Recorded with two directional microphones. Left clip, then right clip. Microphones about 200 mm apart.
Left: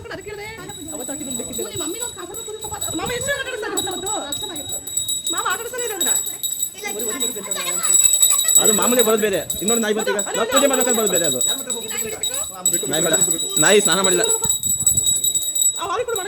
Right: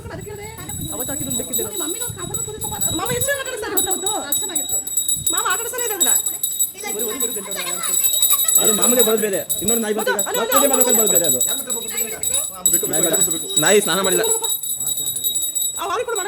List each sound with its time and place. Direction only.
2.9 s jingle bell: 20° right (ahead or behind)
3.8 s a sound: 40° right (ahead or behind)
5.3 s jingle bell: 40° right (ahead or behind)
8.5 s jingle bell: centre (ahead or behind)
8.8 s speech: 10° left (ahead or behind)
10.2 s a sound: 30° right (ahead or behind)
10.7 s speech: 10° left (ahead or behind)
12.9 s speech: 10° left (ahead or behind)
15.8 s jingle bell: 45° right (ahead or behind)